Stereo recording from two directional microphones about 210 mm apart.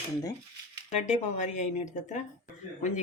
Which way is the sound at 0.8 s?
35° left (ahead or behind).